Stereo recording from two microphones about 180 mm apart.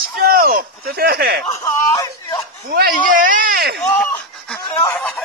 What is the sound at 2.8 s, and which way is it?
Speech, 50° right (ahead or behind).